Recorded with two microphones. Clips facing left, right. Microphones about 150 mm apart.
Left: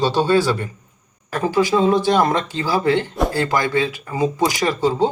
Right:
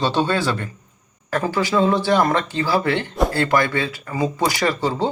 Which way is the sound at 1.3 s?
15° left (ahead or behind).